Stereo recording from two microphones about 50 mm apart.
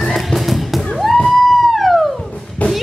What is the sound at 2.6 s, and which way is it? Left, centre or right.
Drum, left.